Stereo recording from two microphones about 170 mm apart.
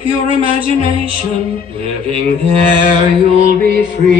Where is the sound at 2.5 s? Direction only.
35° right (ahead or behind).